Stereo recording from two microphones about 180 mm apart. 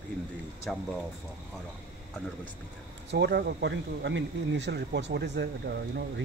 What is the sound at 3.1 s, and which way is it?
Speech, 70° right (ahead or behind).